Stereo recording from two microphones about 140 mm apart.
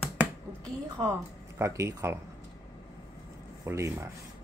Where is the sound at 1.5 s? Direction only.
20° right (ahead or behind).